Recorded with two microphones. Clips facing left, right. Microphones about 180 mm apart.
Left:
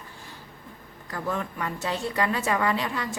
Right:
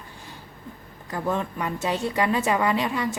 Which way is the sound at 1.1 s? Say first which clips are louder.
Right 4 dB; 20° right (ahead or behind).